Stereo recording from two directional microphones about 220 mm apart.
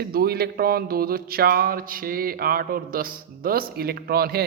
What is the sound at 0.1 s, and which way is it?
A man's voice, 45° right (ahead or behind).